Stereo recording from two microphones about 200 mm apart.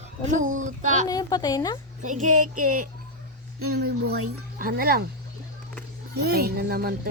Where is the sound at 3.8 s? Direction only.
55° right (ahead or behind).